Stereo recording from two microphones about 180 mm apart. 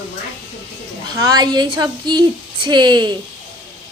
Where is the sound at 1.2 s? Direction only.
20° right (ahead or behind).